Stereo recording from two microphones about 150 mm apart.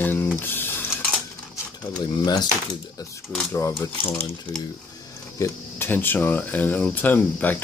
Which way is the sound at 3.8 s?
20° left (ahead or behind).